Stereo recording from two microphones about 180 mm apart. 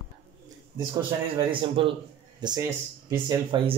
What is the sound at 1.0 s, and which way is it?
Speech, 30° right (ahead or behind).